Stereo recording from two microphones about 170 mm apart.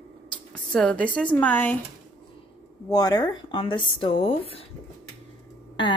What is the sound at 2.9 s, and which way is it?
Speech, 25° left (ahead or behind).